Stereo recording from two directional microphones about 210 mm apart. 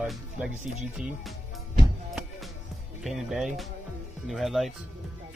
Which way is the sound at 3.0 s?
Centre (ahead or behind).